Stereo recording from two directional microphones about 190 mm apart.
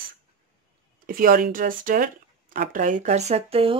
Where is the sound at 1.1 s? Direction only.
50° right (ahead or behind).